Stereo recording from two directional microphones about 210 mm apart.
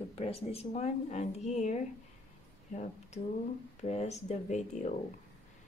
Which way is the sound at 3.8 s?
30° left (ahead or behind).